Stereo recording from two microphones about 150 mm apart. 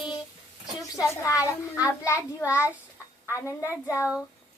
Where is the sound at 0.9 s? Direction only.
20° left (ahead or behind).